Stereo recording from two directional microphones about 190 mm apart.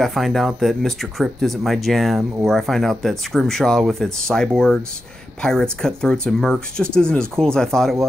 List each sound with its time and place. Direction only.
0.0 s speech: centre (ahead or behind)